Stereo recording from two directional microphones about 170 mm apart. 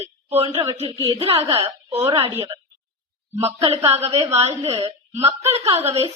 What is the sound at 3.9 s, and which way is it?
A woman's voice, 40° right (ahead or behind).